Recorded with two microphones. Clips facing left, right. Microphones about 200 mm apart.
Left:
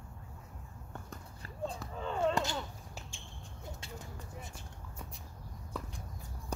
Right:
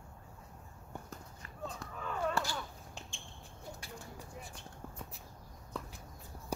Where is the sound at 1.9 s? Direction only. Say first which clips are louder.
Left 4 dB; 25° left (ahead or behind).